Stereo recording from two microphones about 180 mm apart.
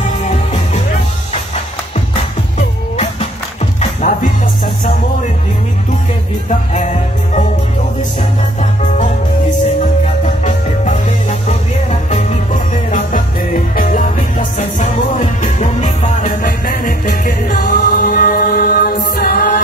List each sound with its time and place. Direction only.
3.8 s music: 45° left (ahead or behind)
6.5 s music: 40° left (ahead or behind)
10.2 s music: 40° left (ahead or behind)